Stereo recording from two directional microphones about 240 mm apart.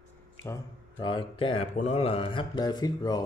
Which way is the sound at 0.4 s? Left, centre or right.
Centre.